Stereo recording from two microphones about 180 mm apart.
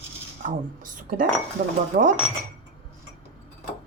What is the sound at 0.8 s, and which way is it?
Speech, 50° right (ahead or behind).